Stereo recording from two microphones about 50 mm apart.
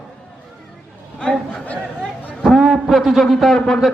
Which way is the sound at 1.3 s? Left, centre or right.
Left.